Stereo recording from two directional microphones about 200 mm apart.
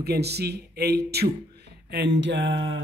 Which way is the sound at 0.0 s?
55° right (ahead or behind).